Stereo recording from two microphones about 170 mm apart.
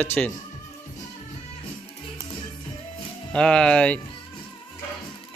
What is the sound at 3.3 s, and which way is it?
Speech, 5° left (ahead or behind).